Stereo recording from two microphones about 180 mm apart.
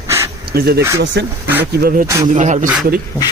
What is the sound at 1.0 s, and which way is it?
Speech, 75° right (ahead or behind).